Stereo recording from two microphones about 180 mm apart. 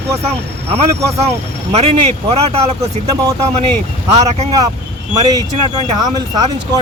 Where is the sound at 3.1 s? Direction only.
20° right (ahead or behind).